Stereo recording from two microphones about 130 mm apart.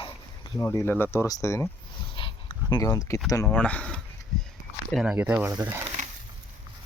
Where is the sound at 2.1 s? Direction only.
40° left (ahead or behind); by 3.2 s 25° left (ahead or behind).